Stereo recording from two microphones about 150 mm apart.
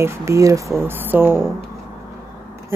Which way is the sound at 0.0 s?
20° right (ahead or behind).